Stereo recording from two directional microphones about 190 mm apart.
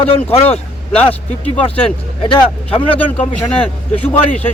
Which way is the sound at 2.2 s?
30° left (ahead or behind).